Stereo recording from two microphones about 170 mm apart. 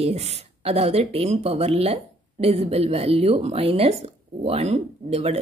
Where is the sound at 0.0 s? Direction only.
40° right (ahead or behind).